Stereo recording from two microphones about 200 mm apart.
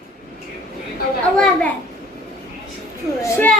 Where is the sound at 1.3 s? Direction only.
5° left (ahead or behind).